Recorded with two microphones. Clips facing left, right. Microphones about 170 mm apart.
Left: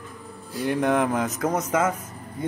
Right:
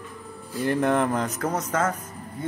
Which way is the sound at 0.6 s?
Centre (ahead or behind).